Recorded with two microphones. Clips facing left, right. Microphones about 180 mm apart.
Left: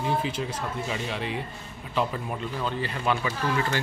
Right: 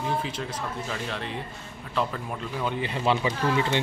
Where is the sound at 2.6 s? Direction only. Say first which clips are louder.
Right 4 dB; 15° right (ahead or behind).